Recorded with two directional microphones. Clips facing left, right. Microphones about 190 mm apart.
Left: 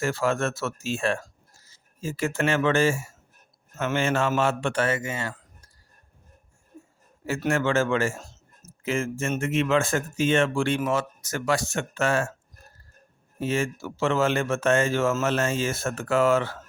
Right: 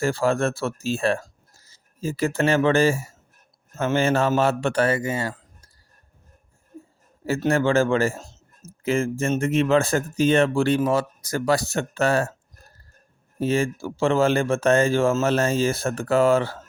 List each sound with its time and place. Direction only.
0.0 s a man's voice: 35° right (ahead or behind)
7.3 s a man's voice: 35° right (ahead or behind)
13.4 s a man's voice: 35° right (ahead or behind)